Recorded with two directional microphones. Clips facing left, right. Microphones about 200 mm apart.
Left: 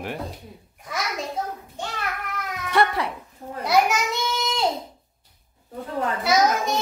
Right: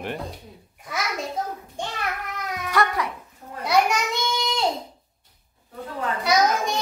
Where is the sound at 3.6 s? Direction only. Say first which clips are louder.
Left 1 dB; centre (ahead or behind).